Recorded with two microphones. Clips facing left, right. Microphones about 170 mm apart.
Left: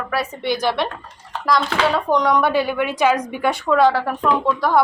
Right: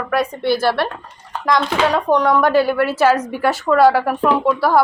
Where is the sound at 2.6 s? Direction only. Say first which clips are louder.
Right 3 dB; 5° right (ahead or behind).